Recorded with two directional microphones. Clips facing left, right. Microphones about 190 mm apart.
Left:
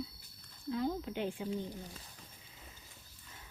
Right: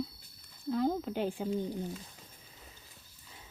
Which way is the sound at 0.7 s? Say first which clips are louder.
Right 5 dB; 50° right (ahead or behind).